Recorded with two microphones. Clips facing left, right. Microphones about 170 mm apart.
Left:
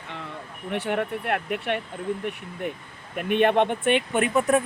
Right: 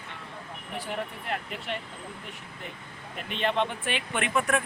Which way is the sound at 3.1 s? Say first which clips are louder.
Left 8 dB; 55° left (ahead or behind).